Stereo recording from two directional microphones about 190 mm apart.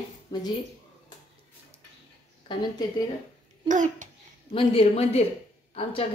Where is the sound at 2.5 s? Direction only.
25° left (ahead or behind).